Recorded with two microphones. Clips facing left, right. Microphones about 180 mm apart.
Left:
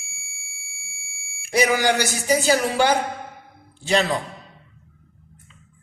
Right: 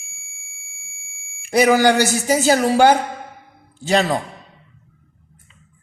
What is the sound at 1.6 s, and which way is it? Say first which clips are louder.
A woman's voice: right 6 dB; 45° right (ahead or behind).